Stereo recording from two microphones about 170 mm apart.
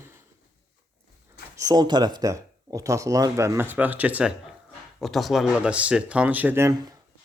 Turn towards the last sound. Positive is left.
turn(degrees=-15)  # may be behind; listen again after turning